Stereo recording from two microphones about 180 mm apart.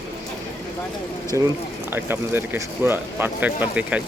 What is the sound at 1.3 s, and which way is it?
Speech, 20° right (ahead or behind).